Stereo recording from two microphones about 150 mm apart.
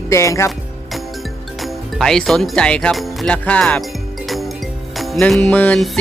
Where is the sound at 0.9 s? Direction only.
Centre (ahead or behind).